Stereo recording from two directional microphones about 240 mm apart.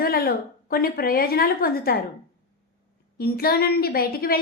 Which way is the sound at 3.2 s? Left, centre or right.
Left.